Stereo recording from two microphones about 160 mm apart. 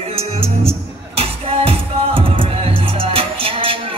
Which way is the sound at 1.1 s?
35° right (ahead or behind).